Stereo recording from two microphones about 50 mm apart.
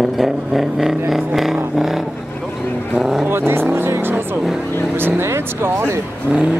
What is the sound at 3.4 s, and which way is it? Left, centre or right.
Vehicle, right.